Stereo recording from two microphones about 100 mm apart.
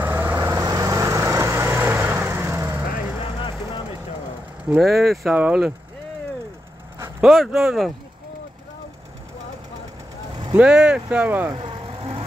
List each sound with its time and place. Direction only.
0.0 s vehicle: 20° right (ahead or behind)
3.3 s vehicle: 55° left (ahead or behind)
4.6 s speech: 5° right (ahead or behind)
5.3 s speech: 10° right (ahead or behind)
7.2 s speech: centre (ahead or behind)
10.5 s speech: 10° right (ahead or behind)
11.5 s vehicle: 60° right (ahead or behind)